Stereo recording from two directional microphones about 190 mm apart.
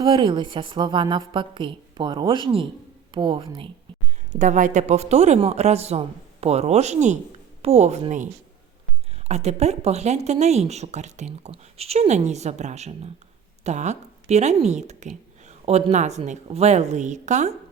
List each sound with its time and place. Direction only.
0.0 s a woman's voice: 25° right (ahead or behind)
4.3 s speech: 40° right (ahead or behind)